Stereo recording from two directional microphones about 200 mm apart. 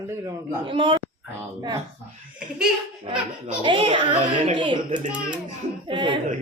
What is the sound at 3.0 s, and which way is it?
Speech, 25° right (ahead or behind).